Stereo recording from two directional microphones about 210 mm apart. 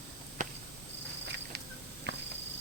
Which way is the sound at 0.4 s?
35° right (ahead or behind).